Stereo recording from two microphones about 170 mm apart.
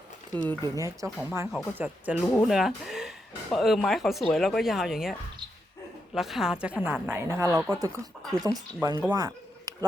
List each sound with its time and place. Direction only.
0.6 s a woman's voice: 20° right (ahead or behind)
2.2 s speech: 5° left (ahead or behind)
6.1 s a woman's voice: centre (ahead or behind)
7.5 s speech: centre (ahead or behind)
8.4 s speech: 20° right (ahead or behind)
9.1 s a sound: 20° right (ahead or behind)